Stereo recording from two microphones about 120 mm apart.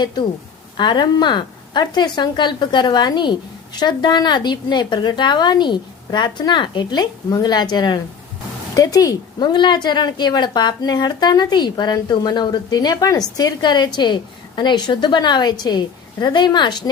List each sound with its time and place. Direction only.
0.0 s a woman's voice: 35° left (ahead or behind)